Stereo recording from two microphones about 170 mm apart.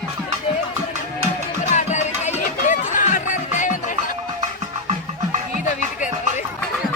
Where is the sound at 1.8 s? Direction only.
45° left (ahead or behind).